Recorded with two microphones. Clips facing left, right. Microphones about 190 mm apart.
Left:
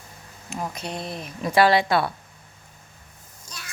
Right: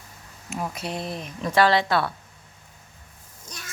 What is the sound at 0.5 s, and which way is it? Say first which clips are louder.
Speech: right 1 dB; centre (ahead or behind).